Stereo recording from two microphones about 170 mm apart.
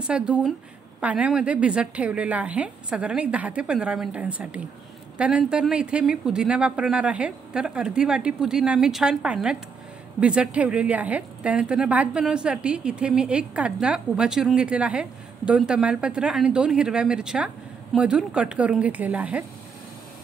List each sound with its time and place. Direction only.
0.0 s a woman's voice: 5° right (ahead or behind)